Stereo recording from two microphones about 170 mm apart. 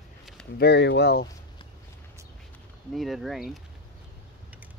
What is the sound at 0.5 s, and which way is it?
Speech, 80° left.